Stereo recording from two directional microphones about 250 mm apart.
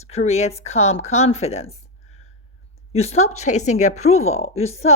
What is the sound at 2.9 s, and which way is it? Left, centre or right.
A woman's voice, left.